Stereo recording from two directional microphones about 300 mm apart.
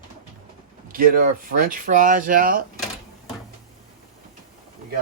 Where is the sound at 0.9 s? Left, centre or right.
Right.